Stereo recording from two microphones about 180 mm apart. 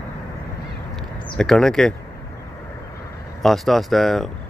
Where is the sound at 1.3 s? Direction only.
5° left (ahead or behind).